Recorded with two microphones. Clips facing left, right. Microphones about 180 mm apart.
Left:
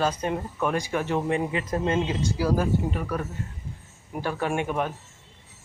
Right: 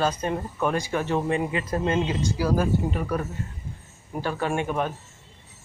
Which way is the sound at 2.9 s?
15° right (ahead or behind).